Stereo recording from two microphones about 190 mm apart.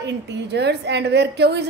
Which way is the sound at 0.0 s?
65° right (ahead or behind).